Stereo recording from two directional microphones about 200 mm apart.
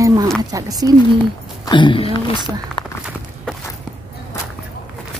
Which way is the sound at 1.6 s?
25° left (ahead or behind).